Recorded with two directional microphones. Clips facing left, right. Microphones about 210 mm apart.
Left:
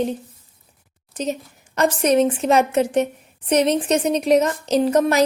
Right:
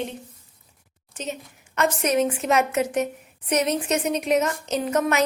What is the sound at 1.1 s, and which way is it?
A woman's voice, 35° left (ahead or behind).